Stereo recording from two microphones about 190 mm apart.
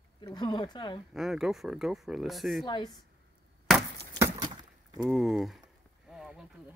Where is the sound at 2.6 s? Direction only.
20° left (ahead or behind).